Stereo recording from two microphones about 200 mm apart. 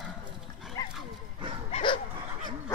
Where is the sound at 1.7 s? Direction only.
25° left (ahead or behind).